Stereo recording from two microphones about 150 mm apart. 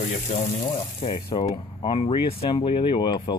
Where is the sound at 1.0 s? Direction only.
40° left (ahead or behind).